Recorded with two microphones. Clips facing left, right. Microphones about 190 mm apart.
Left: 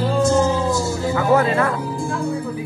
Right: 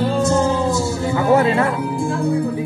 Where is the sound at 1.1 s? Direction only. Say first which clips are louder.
Right 2 dB; 25° right (ahead or behind).